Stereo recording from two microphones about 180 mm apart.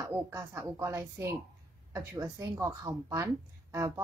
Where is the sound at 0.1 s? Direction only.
15° right (ahead or behind).